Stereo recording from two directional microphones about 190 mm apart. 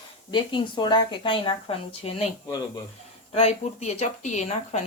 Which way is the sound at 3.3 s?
35° left (ahead or behind).